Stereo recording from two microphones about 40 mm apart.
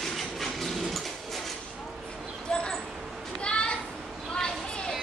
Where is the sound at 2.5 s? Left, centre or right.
Centre.